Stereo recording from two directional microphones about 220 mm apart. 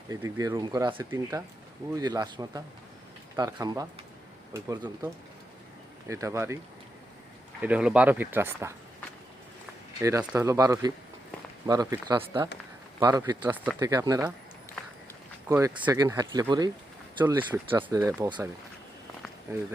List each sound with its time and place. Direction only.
0.1 s speech: 15° right (ahead or behind)
7.6 s speech: 5° right (ahead or behind)
10.0 s speech: 15° right (ahead or behind)
15.4 s speech: 15° right (ahead or behind)